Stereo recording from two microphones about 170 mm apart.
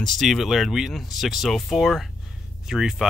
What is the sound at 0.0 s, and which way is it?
Speech, centre (ahead or behind).